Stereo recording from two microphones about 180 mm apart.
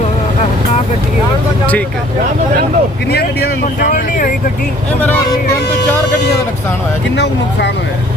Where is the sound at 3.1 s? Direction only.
60° left (ahead or behind).